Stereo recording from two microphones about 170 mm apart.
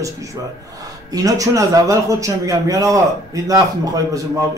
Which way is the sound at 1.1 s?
20° right (ahead or behind).